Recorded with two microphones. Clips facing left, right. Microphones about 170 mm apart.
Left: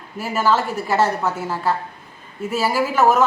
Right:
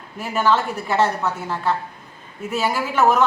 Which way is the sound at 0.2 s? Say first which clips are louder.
Even; 5° left (ahead or behind).